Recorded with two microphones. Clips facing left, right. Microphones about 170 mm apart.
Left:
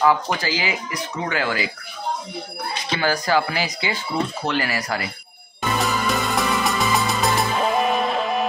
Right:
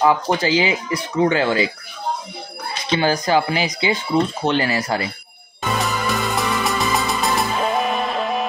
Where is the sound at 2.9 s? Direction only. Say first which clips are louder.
Right 3 dB; 20° right (ahead or behind).